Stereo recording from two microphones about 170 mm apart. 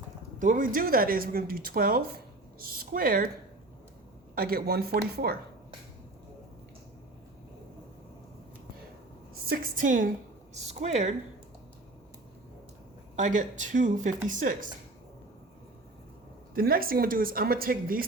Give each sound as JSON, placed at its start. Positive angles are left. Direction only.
{"t": 0.3, "sound": "speech", "side_deg": -50}
{"t": 4.4, "sound": "speech", "side_deg": -60}
{"t": 9.5, "sound": "speech", "side_deg": -55}
{"t": 10.5, "sound": "speech", "side_deg": -40}
{"t": 13.1, "sound": "speech", "side_deg": -45}
{"t": 16.6, "sound": "speech", "side_deg": -60}